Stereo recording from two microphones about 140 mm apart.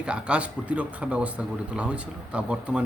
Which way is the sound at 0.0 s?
10° right (ahead or behind).